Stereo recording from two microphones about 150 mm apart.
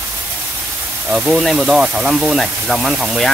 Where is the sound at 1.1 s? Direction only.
Centre (ahead or behind).